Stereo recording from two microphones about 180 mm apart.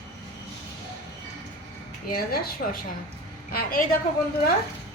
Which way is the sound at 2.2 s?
55° left (ahead or behind).